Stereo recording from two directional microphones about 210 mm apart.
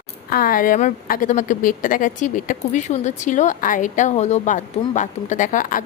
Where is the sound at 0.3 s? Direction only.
45° left (ahead or behind).